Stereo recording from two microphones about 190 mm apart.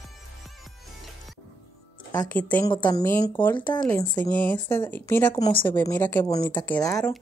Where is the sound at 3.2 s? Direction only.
10° left (ahead or behind).